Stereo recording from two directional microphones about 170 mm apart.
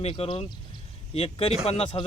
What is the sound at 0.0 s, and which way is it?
Speech, 30° left (ahead or behind).